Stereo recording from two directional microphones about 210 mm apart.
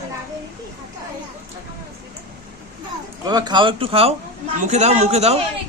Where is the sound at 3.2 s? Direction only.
20° right (ahead or behind).